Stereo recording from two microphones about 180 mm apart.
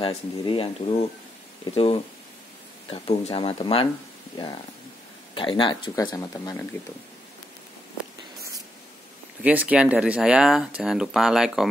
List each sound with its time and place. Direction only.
0.0 s speech: 30° left (ahead or behind)
5.3 s speech: 30° left (ahead or behind)
9.4 s speech: 5° right (ahead or behind)